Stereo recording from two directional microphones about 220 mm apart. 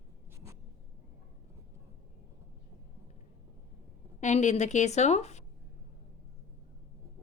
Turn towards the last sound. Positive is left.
turn(degrees=30)  # may be behind; listen again after turning